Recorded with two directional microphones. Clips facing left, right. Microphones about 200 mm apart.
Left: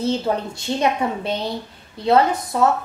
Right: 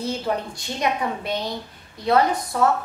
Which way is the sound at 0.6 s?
25° left (ahead or behind).